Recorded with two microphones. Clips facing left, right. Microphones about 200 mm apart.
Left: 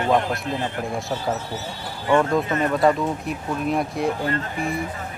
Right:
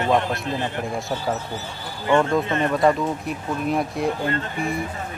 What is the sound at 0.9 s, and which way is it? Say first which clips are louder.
Speech: even; centre (ahead or behind).